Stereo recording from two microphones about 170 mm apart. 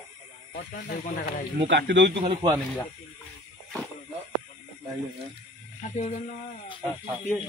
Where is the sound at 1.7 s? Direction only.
90° right.